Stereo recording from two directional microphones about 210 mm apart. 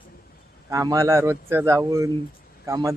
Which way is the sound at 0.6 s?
15° right (ahead or behind).